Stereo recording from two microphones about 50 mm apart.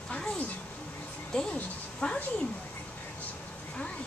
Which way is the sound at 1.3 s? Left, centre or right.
Centre.